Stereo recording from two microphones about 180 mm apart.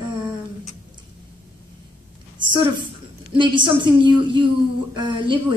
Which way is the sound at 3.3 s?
25° right (ahead or behind).